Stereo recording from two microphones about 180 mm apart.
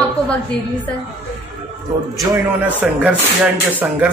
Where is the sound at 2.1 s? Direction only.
20° right (ahead or behind).